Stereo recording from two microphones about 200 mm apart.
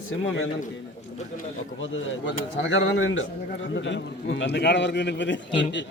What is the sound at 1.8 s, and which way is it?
A man's voice, 70° left (ahead or behind).